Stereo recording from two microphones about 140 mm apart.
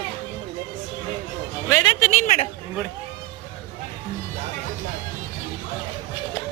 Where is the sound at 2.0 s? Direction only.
55° left (ahead or behind).